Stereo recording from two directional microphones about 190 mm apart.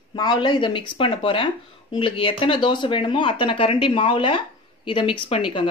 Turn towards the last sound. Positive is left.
turn(degrees=25)  # may be behind; listen again after turning